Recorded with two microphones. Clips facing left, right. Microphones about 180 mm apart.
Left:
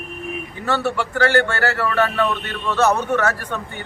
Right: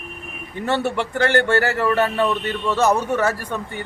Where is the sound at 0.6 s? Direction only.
20° right (ahead or behind).